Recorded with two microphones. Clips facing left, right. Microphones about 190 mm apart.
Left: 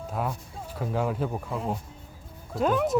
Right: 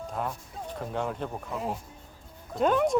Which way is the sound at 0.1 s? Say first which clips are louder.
Left 4 dB; 5° left (ahead or behind).